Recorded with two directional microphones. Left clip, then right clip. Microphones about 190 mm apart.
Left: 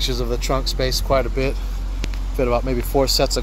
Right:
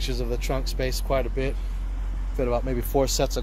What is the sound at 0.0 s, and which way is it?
Speech, 5° right (ahead or behind).